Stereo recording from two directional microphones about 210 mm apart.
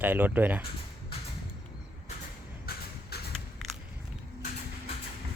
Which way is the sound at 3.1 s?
50° left (ahead or behind).